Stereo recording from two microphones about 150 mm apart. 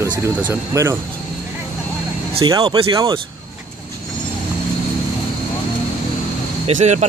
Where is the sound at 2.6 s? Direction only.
25° right (ahead or behind).